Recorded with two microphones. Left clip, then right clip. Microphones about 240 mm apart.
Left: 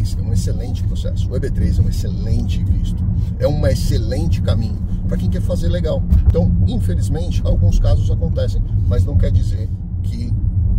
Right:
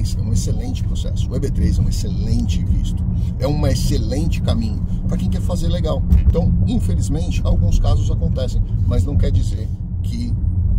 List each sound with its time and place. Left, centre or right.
1.3 s speech: centre